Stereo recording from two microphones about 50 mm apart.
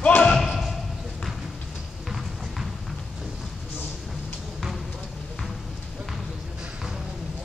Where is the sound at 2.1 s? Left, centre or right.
Centre.